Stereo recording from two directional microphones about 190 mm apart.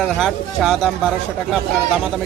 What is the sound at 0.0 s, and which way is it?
Speech, centre (ahead or behind).